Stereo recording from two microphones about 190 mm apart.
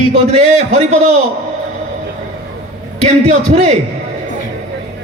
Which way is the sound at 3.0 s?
35° right (ahead or behind).